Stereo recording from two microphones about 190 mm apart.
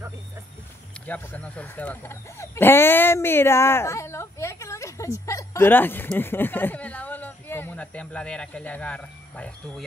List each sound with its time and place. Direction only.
1.0 s speech: 10° left (ahead or behind)